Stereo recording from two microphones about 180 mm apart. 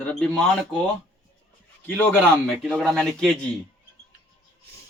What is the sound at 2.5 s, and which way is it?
Speech, 5° right (ahead or behind).